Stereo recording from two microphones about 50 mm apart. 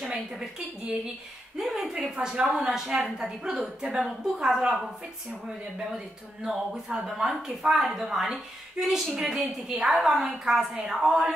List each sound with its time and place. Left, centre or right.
0.0 s speech: centre
1.6 s a sound: centre
2.0 s speech: centre
5.9 s speech: centre